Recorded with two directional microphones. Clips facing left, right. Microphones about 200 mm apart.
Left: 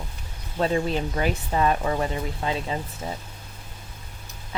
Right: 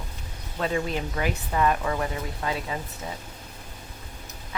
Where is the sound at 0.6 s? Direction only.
30° left (ahead or behind).